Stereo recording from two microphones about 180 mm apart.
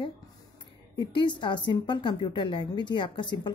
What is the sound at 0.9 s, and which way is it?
A woman's voice, 25° left (ahead or behind).